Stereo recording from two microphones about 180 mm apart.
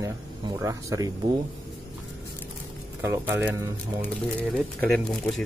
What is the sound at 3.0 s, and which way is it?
Speech, 10° right (ahead or behind).